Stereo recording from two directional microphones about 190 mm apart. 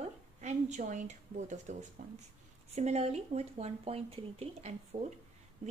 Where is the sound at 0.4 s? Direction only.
35° right (ahead or behind).